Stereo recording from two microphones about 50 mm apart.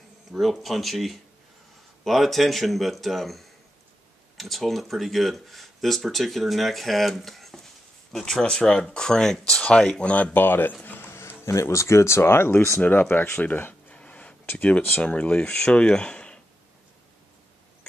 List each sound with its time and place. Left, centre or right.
0.3 s speech: centre
9.6 s speech: left
10.3 s speech: left
10.7 s a sound: left
11.1 s speech: left
13.1 s speech: left
13.9 s a sound: left
14.4 s a sound: left
15.0 s speech: left